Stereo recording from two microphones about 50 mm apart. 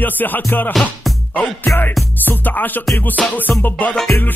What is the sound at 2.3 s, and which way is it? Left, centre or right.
Music, left.